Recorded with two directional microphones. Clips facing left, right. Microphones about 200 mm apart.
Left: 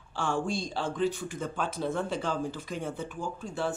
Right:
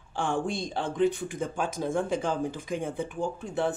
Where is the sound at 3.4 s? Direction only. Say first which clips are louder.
Right 3 dB; 20° right (ahead or behind).